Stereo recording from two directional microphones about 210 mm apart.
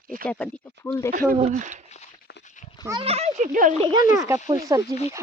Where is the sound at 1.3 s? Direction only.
30° right (ahead or behind).